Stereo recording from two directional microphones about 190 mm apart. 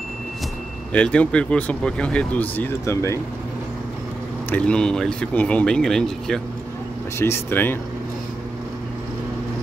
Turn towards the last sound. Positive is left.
turn(degrees=10)  # may be behind; listen again after turning